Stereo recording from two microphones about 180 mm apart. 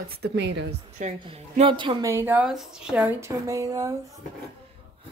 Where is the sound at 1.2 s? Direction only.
35° right (ahead or behind).